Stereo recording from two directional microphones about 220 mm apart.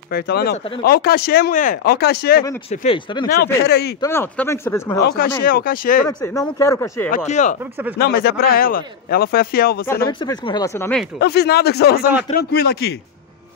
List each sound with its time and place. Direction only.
0.1 s speech: 45° left (ahead or behind)
2.7 s speech: 30° left (ahead or behind)
3.6 s speech: 50° left (ahead or behind)
4.0 s speech: 10° left (ahead or behind)
5.0 s speech: 45° left (ahead or behind)
6.0 s speech: 15° left (ahead or behind)
7.2 s speech: 35° left (ahead or behind)
8.0 s speech: 45° left (ahead or behind)
10.0 s speech: 20° left (ahead or behind)
11.1 s speech: 50° left (ahead or behind)